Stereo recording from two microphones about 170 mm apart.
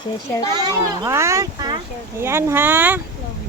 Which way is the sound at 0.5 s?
20° right (ahead or behind).